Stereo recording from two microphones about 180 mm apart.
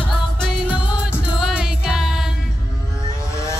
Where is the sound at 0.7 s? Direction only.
5° right (ahead or behind).